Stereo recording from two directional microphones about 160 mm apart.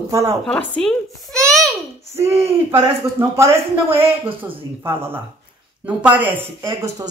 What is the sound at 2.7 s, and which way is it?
Speech, 15° right (ahead or behind).